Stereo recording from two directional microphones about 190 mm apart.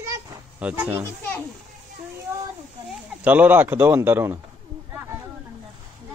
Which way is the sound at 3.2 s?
10° right (ahead or behind).